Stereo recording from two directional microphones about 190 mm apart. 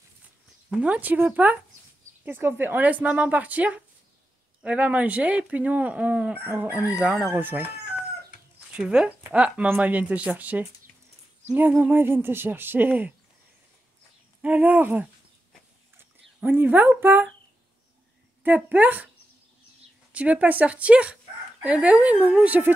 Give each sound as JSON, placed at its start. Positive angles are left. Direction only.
{"t": 0.7, "sound": "speech", "side_deg": -5}
{"t": 14.4, "sound": "speech", "side_deg": -10}
{"t": 18.4, "sound": "speech", "side_deg": -10}
{"t": 20.1, "sound": "speech", "side_deg": -5}